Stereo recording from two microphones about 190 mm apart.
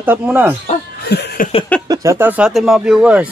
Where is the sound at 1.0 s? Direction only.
60° left (ahead or behind).